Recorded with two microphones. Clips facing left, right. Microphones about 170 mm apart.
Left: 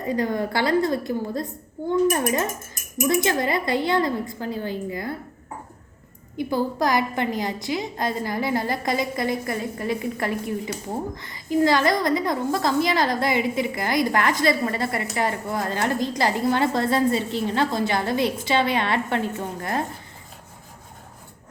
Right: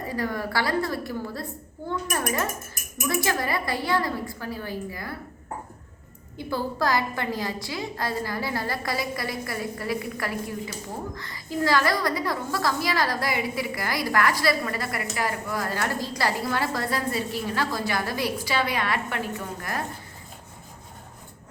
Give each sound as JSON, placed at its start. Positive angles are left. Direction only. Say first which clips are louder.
{"t": 0.1, "sound": "a woman's voice", "louder": "left 5 dB", "side_deg": 20}
{"t": 6.3, "sound": "a woman's voice", "louder": "left 5 dB", "side_deg": 15}